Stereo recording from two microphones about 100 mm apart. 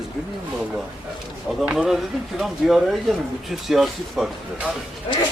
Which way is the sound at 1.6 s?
10° right (ahead or behind).